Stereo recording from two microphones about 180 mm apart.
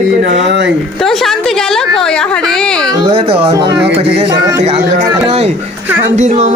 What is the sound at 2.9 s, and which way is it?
Speech, 25° right (ahead or behind).